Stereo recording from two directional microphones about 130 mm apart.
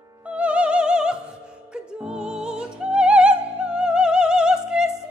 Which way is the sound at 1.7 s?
5° right (ahead or behind).